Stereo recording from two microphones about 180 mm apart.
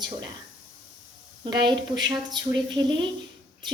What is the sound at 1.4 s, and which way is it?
A woman's voice, 25° right (ahead or behind).